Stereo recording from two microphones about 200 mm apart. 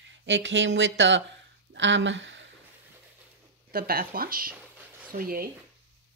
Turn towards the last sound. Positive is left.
turn(degrees=-45)  # may be behind; listen again after turning